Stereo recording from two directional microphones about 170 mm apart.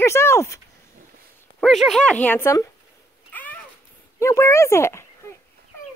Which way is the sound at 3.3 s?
10° left (ahead or behind).